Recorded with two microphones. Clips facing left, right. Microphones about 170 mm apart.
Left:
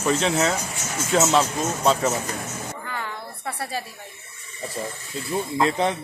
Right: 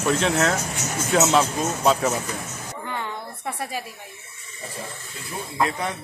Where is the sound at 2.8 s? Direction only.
20° right (ahead or behind).